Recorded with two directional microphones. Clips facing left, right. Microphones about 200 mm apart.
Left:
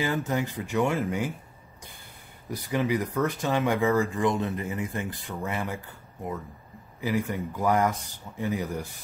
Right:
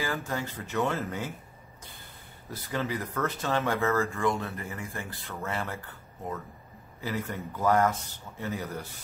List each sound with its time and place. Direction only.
0.0 s speech: 20° left (ahead or behind)
2.5 s speech: 15° left (ahead or behind)
7.0 s speech: 15° left (ahead or behind)